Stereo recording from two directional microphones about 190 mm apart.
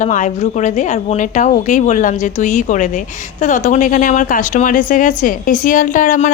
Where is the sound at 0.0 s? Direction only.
40° left (ahead or behind).